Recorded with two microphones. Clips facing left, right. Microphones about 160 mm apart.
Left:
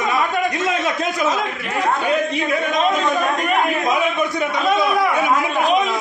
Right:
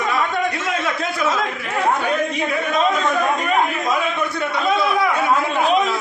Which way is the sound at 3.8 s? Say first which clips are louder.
Left 2 dB; 15° left (ahead or behind).